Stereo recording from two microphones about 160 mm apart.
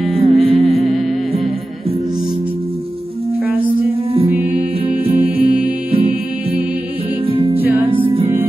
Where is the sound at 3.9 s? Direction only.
35° right (ahead or behind).